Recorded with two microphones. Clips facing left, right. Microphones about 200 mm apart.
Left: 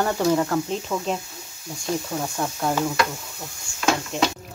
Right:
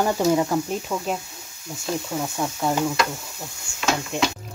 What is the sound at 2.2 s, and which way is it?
Speech, 5° right (ahead or behind).